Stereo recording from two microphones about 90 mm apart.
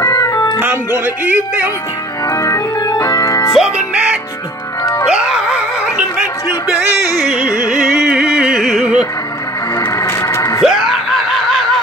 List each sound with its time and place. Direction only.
0.0 s music: 40° left (ahead or behind)
0.6 s speech: 20° right (ahead or behind)
2.2 s organ: 35° left (ahead or behind)
2.8 s organ: 50° left (ahead or behind)
3.5 s music: 10° right (ahead or behind)
7.3 s music: 10° right (ahead or behind)
9.8 s a sound: 35° left (ahead or behind)
10.6 s snicker: 5° right (ahead or behind)